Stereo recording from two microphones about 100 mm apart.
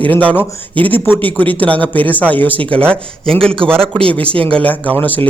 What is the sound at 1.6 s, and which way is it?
A man's voice, 15° left (ahead or behind).